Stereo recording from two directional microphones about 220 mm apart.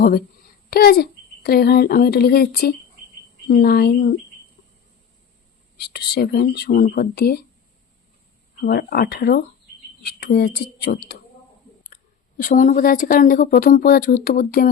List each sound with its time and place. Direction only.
0.7 s speech: 45° left (ahead or behind)
5.7 s speech: 45° left (ahead or behind)
8.6 s speech: 45° left (ahead or behind)
12.4 s speech: 35° left (ahead or behind)